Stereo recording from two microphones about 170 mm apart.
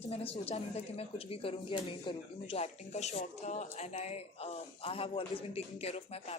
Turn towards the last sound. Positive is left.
turn(degrees=35)  # may be behind; listen again after turning